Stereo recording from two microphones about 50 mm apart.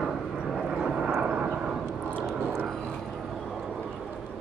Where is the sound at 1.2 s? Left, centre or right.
Right.